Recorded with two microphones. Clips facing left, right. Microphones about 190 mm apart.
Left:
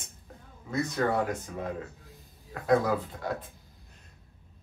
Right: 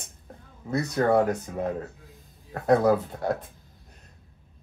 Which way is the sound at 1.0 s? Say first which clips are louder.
Right 5 dB; 40° right (ahead or behind).